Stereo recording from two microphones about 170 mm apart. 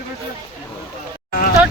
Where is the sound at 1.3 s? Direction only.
60° left (ahead or behind).